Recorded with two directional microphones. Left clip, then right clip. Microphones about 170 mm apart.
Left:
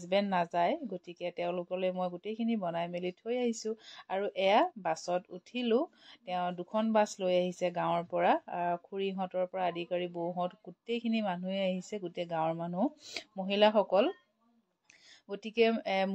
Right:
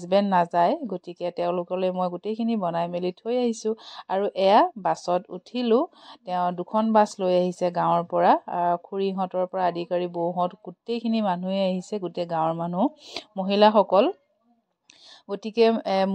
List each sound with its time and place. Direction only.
0.0 s a woman's voice: 45° right (ahead or behind)
15.2 s speech: 40° right (ahead or behind)